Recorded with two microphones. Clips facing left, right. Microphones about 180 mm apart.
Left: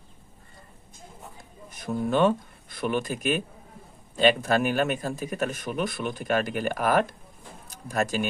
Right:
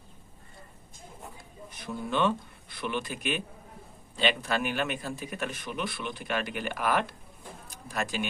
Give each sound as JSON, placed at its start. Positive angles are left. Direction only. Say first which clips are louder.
{"t": 1.7, "sound": "a man's voice", "louder": "left 7 dB", "side_deg": 45}